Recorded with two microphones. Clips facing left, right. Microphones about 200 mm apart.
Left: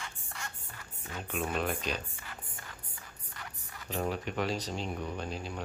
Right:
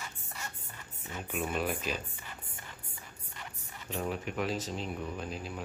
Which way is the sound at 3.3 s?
20° right (ahead or behind).